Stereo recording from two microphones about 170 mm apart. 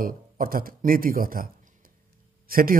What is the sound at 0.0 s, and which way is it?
A man's voice, 55° right (ahead or behind).